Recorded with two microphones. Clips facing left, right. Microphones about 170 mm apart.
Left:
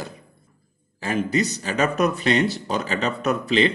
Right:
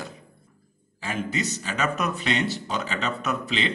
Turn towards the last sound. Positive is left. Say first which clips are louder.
# left 7 dB
turn(degrees=50)  # may be behind; listen again after turning